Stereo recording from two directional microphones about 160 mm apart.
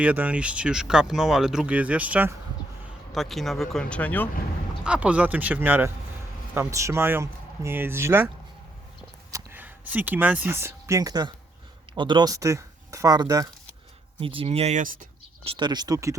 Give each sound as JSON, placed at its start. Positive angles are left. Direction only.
{"t": 0.0, "sound": "speech", "side_deg": -10}
{"t": 4.8, "sound": "speech", "side_deg": -5}
{"t": 9.3, "sound": "speech", "side_deg": -10}
{"t": 14.2, "sound": "speech", "side_deg": -35}
{"t": 15.4, "sound": "speech", "side_deg": -30}